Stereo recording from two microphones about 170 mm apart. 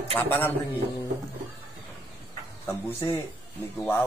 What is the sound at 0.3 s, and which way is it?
Speech, 10° left (ahead or behind).